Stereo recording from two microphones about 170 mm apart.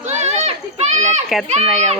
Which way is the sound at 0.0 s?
40° right (ahead or behind).